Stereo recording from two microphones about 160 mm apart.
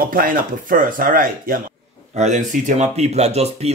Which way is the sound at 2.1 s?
50° right (ahead or behind).